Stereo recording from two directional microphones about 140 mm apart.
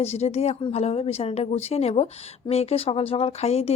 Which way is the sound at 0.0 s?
50° left (ahead or behind).